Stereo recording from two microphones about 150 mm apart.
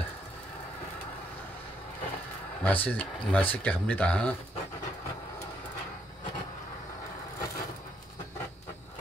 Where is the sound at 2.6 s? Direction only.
10° left (ahead or behind).